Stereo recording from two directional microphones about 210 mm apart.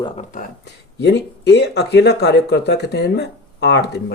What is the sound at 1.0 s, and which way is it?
Speech, 55° left (ahead or behind).